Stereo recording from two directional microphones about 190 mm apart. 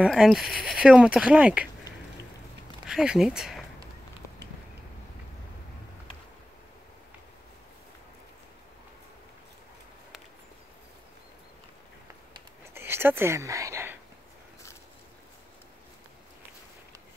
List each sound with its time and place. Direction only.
0.0 s speech: centre (ahead or behind)
2.9 s speech: 5° right (ahead or behind)
12.7 s a sound: 10° right (ahead or behind)